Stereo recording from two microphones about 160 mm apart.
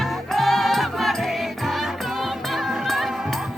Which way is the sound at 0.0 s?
Centre (ahead or behind).